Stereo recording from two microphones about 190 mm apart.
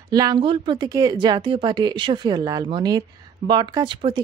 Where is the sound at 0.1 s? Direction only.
20° right (ahead or behind).